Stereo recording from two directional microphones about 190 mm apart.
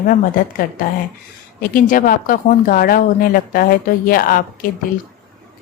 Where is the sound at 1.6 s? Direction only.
45° left (ahead or behind).